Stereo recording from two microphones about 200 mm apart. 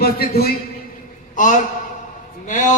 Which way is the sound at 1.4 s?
40° left (ahead or behind).